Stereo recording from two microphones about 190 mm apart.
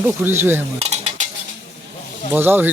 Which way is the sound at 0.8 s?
35° right (ahead or behind).